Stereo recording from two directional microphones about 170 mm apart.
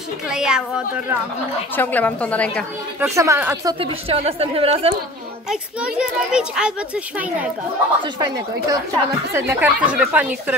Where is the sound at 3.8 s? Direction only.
35° right (ahead or behind).